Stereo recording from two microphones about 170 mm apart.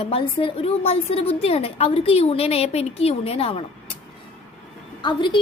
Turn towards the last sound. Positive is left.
turn(degrees=30)  # may be behind; listen again after turning